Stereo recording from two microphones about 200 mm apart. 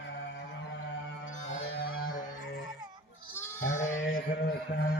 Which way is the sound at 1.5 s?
90° left.